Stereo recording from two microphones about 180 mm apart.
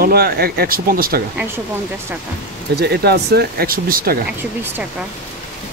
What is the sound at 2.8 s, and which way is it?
Speech, 65° right (ahead or behind).